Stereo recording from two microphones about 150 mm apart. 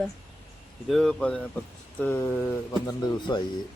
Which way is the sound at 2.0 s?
15° left (ahead or behind).